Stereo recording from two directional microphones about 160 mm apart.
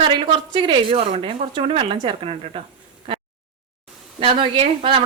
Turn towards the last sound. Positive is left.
turn(degrees=-35)  # may be behind; listen again after turning